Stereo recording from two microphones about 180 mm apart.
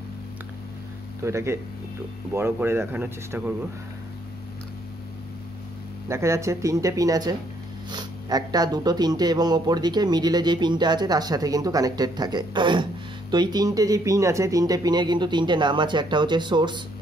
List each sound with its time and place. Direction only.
1.2 s speech: 15° right (ahead or behind)
6.0 s speech: 15° right (ahead or behind)